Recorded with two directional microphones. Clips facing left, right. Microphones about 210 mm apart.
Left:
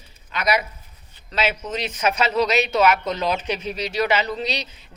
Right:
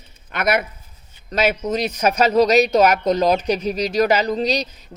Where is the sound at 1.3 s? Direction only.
40° right (ahead or behind).